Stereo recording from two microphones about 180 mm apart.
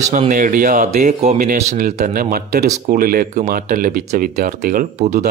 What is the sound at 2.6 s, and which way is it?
Speech, 40° right (ahead or behind).